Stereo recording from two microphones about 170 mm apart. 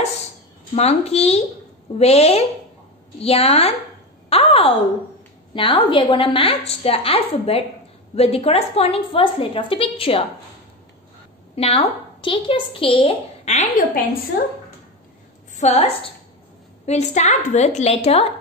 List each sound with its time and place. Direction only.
0.7 s a woman's voice: 40° left (ahead or behind)
11.5 s a woman's voice: 35° left (ahead or behind)
15.5 s a woman's voice: 40° left (ahead or behind)